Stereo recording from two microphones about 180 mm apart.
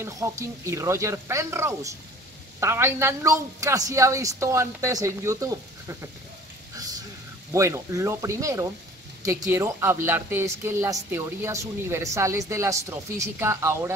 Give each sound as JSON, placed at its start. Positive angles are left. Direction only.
{"t": 0.0, "sound": "speech", "side_deg": -15}
{"t": 7.5, "sound": "speech", "side_deg": -15}